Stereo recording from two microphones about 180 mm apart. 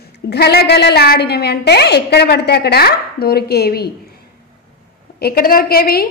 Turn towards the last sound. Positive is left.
turn(degrees=55)  # may be behind; listen again after turning